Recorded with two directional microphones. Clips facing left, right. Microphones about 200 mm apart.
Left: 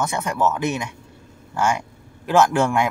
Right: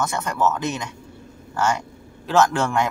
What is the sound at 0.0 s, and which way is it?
A man's voice, 10° left (ahead or behind).